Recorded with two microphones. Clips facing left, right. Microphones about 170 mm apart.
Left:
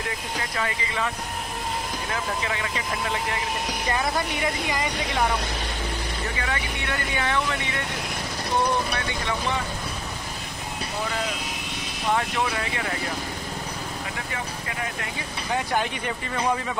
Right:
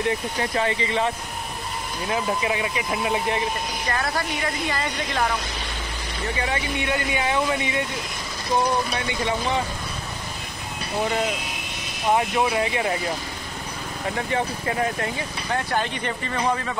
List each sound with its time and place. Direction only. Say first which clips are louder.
0.4 s speech: right 3 dB; 30° right (ahead or behind)
2.4 s speech: right 4 dB; 20° right (ahead or behind)
4.6 s speech: even; 15° left (ahead or behind)
6.4 s speech: right 4 dB; 20° right (ahead or behind)
12.1 s speech: right 4 dB; 20° right (ahead or behind)
14.3 s speech: right 8 dB; 35° right (ahead or behind)
15.5 s speech: even; 10° left (ahead or behind)